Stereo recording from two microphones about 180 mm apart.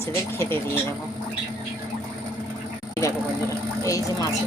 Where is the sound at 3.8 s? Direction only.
20° left (ahead or behind).